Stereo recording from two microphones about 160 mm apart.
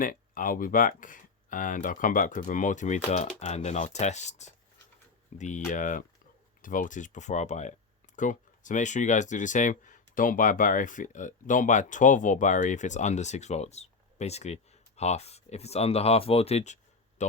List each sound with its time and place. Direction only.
0.0 s speech: 60° left (ahead or behind)